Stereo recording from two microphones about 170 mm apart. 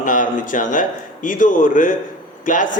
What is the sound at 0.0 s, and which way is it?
Speech, 50° left (ahead or behind).